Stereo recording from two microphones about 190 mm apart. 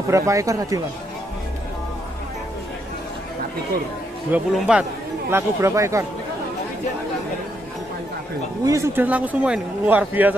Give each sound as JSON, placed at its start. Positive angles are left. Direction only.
{"t": 0.1, "sound": "a man's voice", "side_deg": -15}
{"t": 4.3, "sound": "a man's voice", "side_deg": -5}
{"t": 8.6, "sound": "a man's voice", "side_deg": -15}